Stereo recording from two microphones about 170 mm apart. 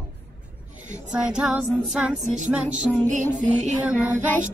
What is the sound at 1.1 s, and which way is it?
Music, 5° right (ahead or behind).